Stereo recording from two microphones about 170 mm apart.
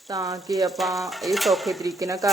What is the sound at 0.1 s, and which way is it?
Speech, 20° right (ahead or behind).